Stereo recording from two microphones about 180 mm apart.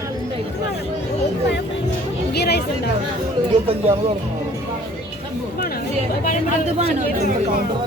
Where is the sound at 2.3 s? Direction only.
65° left (ahead or behind).